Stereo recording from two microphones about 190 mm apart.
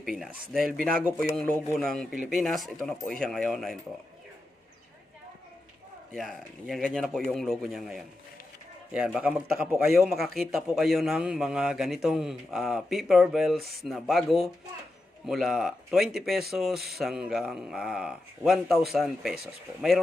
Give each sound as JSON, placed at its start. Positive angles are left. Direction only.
{"t": 0.0, "sound": "a man's voice", "side_deg": -5}
{"t": 0.7, "sound": "speech", "side_deg": -50}
{"t": 1.0, "sound": "a man's voice", "side_deg": 0}
{"t": 6.1, "sound": "a man's voice", "side_deg": 0}